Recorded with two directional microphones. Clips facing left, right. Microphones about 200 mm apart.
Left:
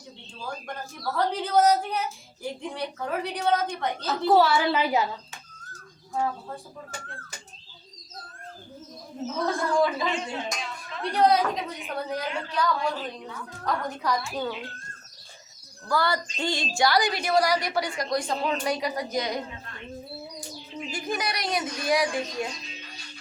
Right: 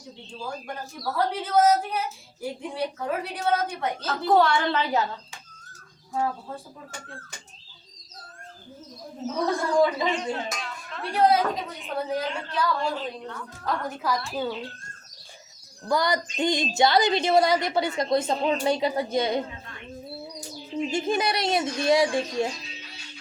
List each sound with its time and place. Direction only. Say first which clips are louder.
1.1 s a woman's voice: even; 5° right (ahead or behind)
4.0 s speech: left 1 dB; 5° left (ahead or behind)
9.3 s a woman's voice: right 2 dB; 20° right (ahead or behind)
10.3 s speech: even; centre (ahead or behind)
15.9 s a woman's voice: right 2 dB; 20° right (ahead or behind)
20.7 s a woman's voice: right 6 dB; 25° right (ahead or behind)